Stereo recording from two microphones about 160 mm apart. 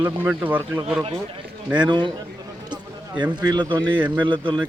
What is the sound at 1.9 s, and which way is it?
Speech, 30° right (ahead or behind).